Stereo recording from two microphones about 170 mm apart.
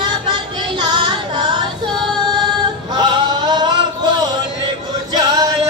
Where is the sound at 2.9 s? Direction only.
25° right (ahead or behind).